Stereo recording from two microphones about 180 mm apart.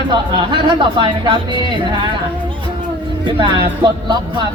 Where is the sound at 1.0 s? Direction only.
25° right (ahead or behind).